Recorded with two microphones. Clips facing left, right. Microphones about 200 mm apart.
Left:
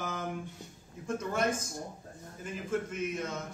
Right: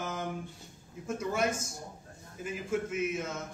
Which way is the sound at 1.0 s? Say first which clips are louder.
Even; 10° right (ahead or behind).